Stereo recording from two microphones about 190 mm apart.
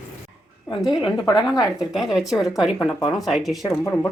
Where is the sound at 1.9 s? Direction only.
Centre (ahead or behind).